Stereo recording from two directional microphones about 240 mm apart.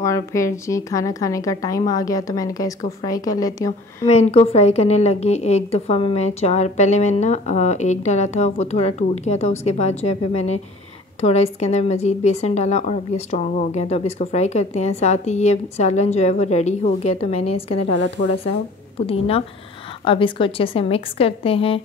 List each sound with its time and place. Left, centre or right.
0.0 s a woman's voice: centre
4.0 s a woman's voice: left
18.2 s speech: left
19.0 s a woman's voice: left